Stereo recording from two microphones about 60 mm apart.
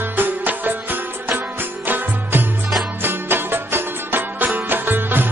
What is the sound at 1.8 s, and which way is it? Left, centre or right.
Music, right.